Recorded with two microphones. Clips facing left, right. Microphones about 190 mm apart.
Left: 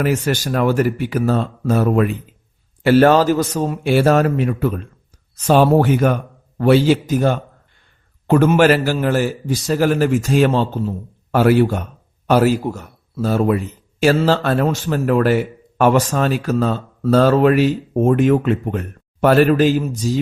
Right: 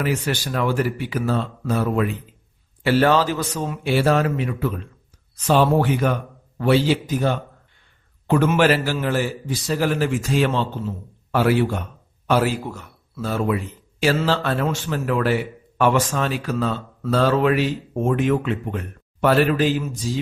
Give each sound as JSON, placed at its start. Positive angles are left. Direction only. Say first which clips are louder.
{"t": 0.0, "sound": "a man's voice", "louder": "left 5 dB", "side_deg": 45}